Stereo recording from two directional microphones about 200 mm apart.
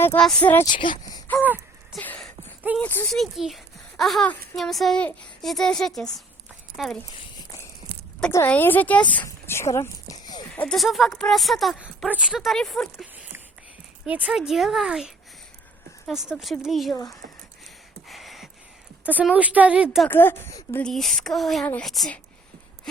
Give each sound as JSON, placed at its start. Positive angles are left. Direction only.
{"t": 0.0, "sound": "speech", "side_deg": 5}
{"t": 0.7, "sound": "speech", "side_deg": 25}
{"t": 1.5, "sound": "a sound", "side_deg": -10}
{"t": 2.0, "sound": "a sound", "side_deg": 5}
{"t": 2.7, "sound": "speech", "side_deg": 10}
{"t": 7.2, "sound": "a sound", "side_deg": 20}
{"t": 7.9, "sound": "a sound", "side_deg": -55}
{"t": 8.3, "sound": "speech", "side_deg": 10}
{"t": 10.5, "sound": "speech", "side_deg": 5}
{"t": 18.1, "sound": "gasp", "side_deg": 0}
{"t": 19.0, "sound": "a woman's voice", "side_deg": -5}
{"t": 20.1, "sound": "speech", "side_deg": 10}